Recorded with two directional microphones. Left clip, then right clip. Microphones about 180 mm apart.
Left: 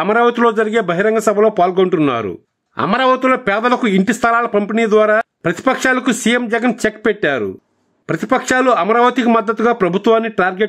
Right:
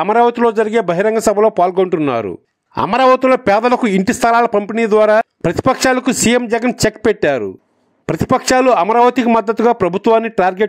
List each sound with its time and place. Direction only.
0.0 s a man's voice: 30° right (ahead or behind)